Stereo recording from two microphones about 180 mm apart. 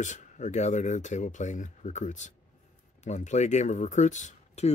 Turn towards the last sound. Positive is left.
turn(degrees=40)  # may be behind; listen again after turning